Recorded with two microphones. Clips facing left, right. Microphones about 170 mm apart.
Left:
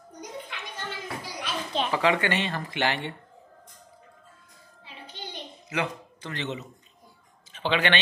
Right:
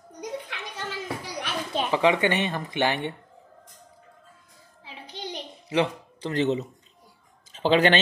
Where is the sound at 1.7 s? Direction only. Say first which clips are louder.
Right 2 dB; 10° right (ahead or behind).